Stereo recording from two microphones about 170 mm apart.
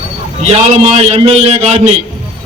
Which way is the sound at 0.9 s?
35° right (ahead or behind).